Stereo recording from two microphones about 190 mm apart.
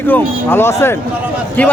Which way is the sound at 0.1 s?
10° left (ahead or behind).